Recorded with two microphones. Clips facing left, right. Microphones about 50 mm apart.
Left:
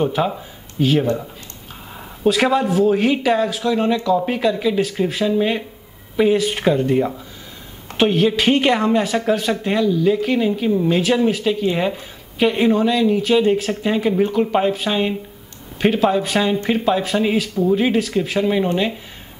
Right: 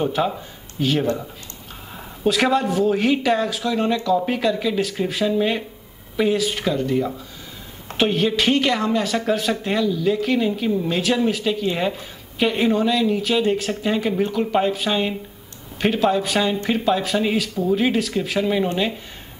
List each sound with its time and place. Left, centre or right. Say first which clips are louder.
0.0 s speech: left 2 dB; centre
6.3 s speech: left 4 dB; left
8.0 s speech: left 3 dB; centre
8.5 s speech: left 4 dB; left
9.1 s speech: left 2 dB; centre